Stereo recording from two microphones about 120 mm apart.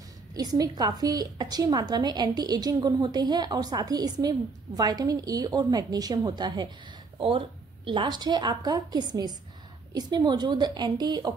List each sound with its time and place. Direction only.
0.3 s a woman's voice: 30° right (ahead or behind)
7.2 s a woman's voice: 50° right (ahead or behind)